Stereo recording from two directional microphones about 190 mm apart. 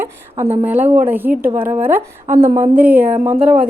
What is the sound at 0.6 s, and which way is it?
Speech, 10° right (ahead or behind).